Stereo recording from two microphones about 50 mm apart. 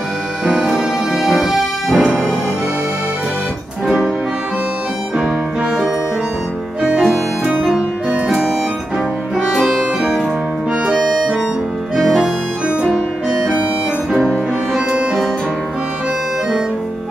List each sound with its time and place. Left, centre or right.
0.5 s music: centre
6.8 s music: centre
9.5 s music: centre